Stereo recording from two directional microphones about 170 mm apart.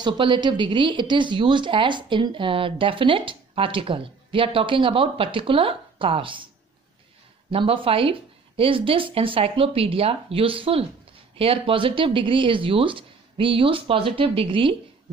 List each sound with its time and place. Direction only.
0.0 s speech: 25° right (ahead or behind)
7.5 s speech: 30° right (ahead or behind)